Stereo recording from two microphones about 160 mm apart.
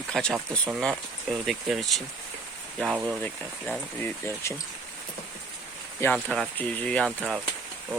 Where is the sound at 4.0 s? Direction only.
15° left (ahead or behind).